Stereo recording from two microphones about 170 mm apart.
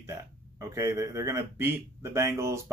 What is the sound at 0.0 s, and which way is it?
Speech, 15° right (ahead or behind).